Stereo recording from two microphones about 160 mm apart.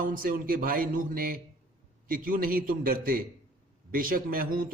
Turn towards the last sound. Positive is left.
turn(degrees=-60)  # may be behind; listen again after turning